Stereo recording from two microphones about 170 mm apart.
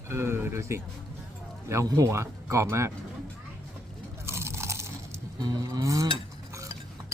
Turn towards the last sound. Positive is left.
turn(degrees=-20)  # may be behind; listen again after turning